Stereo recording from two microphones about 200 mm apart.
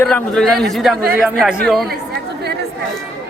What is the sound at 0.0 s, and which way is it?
Speech, 5° left (ahead or behind).